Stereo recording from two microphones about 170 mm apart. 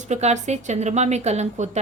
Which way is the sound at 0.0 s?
40° right (ahead or behind).